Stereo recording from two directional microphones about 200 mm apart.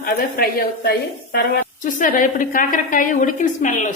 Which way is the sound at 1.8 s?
40° left (ahead or behind).